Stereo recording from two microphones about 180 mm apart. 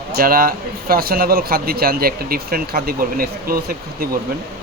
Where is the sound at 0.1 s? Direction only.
55° right (ahead or behind).